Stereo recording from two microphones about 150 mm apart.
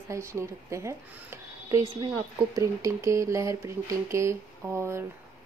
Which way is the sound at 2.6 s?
20° right (ahead or behind).